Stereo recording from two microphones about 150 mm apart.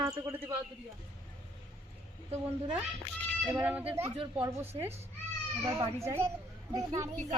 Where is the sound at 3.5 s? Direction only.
10° right (ahead or behind).